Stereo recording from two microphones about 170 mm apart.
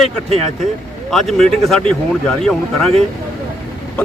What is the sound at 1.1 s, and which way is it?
Speech, centre (ahead or behind).